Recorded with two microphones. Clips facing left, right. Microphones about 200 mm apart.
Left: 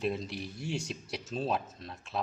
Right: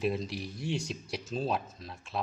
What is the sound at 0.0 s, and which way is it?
Speech, centre (ahead or behind).